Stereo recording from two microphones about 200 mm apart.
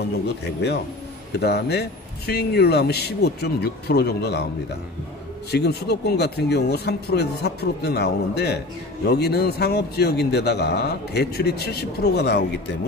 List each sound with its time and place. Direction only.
0.4 s a man's voice: 55° left (ahead or behind)
5.5 s a man's voice: 55° left (ahead or behind)